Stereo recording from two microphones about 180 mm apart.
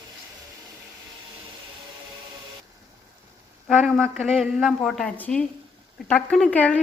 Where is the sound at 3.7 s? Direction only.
5° left (ahead or behind).